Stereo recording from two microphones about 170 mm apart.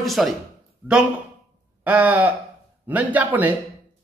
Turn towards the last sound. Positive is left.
turn(degrees=-10)  # may be behind; listen again after turning